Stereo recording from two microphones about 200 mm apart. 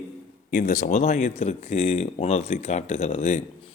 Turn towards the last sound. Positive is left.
turn(degrees=35)  # may be behind; listen again after turning